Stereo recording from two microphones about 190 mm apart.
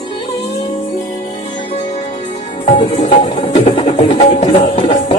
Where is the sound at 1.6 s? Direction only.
35° left (ahead or behind).